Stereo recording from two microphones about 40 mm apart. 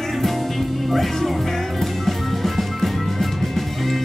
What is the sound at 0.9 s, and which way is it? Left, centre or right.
Music, centre.